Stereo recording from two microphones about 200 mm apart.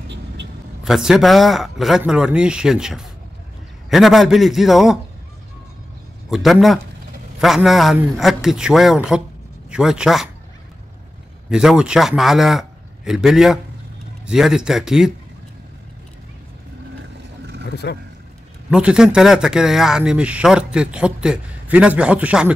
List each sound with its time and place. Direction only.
0.8 s speech: centre (ahead or behind)
6.3 s speech: centre (ahead or behind)
11.4 s a man's voice: 5° right (ahead or behind)
17.8 s speech: 55° left (ahead or behind)
18.7 s speech: 5° right (ahead or behind)